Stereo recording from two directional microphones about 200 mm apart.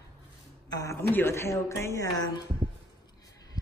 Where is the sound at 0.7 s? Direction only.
15° left (ahead or behind).